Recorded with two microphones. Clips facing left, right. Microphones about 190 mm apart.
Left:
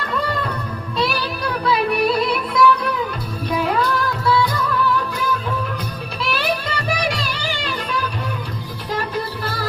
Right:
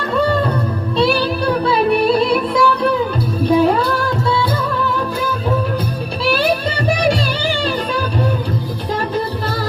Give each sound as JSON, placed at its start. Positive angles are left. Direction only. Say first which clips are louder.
{"t": 0.9, "sound": "music", "louder": "right 7 dB", "side_deg": -30}
{"t": 6.2, "sound": "music", "louder": "right 6 dB", "side_deg": -35}